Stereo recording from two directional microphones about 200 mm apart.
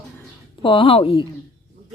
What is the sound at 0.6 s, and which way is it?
Speech, 25° left (ahead or behind).